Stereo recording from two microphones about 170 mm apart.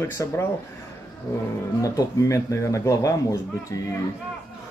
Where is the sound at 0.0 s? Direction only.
15° left (ahead or behind).